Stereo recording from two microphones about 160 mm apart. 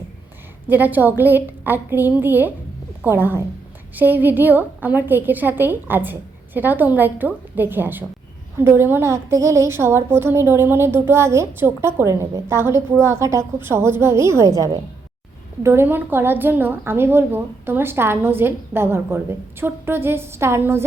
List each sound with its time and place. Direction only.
0.7 s a woman's voice: 10° right (ahead or behind)